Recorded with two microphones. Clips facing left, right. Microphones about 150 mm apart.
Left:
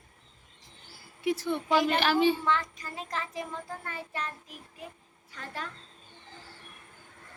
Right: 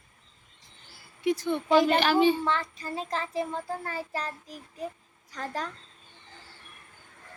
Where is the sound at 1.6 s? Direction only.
30° right (ahead or behind).